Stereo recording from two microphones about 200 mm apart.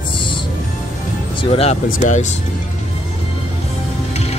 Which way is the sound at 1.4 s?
30° left (ahead or behind).